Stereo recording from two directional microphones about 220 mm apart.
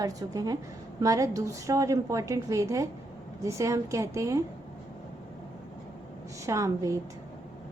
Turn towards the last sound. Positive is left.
turn(degrees=-15)  # may be behind; listen again after turning